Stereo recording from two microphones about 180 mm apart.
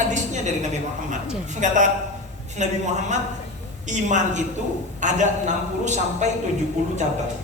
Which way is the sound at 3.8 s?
40° right (ahead or behind).